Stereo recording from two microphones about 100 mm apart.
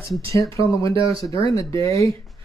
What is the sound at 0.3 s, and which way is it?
Speech, 30° left (ahead or behind).